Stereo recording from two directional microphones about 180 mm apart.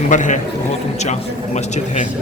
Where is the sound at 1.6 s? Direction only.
40° left (ahead or behind).